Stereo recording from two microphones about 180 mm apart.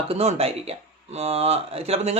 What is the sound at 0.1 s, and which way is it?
Speech, 35° right (ahead or behind).